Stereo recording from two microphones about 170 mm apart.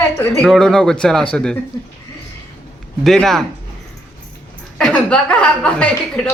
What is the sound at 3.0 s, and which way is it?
Speech, centre (ahead or behind).